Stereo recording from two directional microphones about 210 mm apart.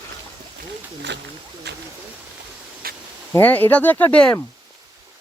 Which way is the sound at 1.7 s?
55° right (ahead or behind).